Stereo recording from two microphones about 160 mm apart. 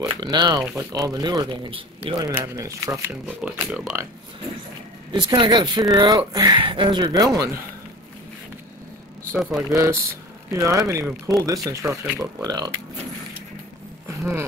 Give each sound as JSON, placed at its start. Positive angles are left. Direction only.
{"t": 0.1, "sound": "speech", "side_deg": -25}
{"t": 3.3, "sound": "speech", "side_deg": -5}
{"t": 5.1, "sound": "speech", "side_deg": -30}
{"t": 9.6, "sound": "speech", "side_deg": -20}
{"t": 14.0, "sound": "a sound", "side_deg": -15}